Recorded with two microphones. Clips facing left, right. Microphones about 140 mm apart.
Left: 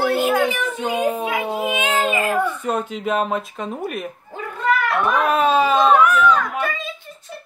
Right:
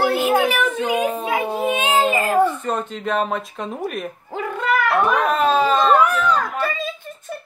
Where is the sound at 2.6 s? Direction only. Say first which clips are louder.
Left 1 dB; 10° left (ahead or behind).